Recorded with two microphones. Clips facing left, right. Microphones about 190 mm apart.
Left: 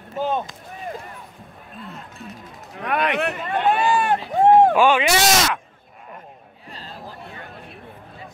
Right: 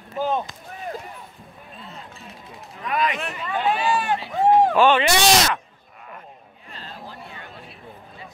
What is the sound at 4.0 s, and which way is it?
Speech, 50° left (ahead or behind).